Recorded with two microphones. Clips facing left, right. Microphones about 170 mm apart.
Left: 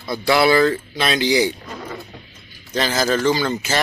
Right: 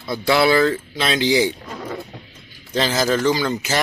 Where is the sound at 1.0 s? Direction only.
20° right (ahead or behind).